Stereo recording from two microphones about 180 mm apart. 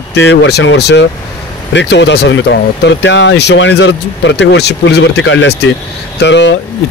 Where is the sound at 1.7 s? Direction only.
80° left.